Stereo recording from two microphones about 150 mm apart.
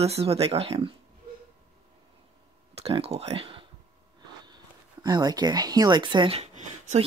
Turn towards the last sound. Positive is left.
turn(degrees=-40)  # may be behind; listen again after turning